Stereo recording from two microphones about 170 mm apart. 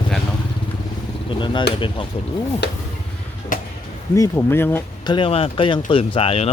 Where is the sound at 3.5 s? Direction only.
50° left (ahead or behind).